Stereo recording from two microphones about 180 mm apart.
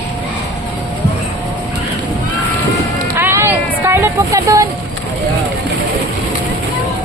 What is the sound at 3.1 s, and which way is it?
Vehicle, 15° right (ahead or behind).